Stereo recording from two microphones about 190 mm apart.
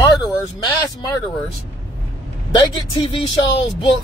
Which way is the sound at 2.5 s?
25° left (ahead or behind).